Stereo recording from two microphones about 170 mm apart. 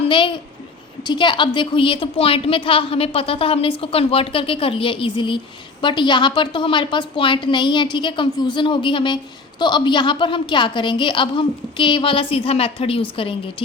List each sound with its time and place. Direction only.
0.0 s a child's voice: 30° left (ahead or behind)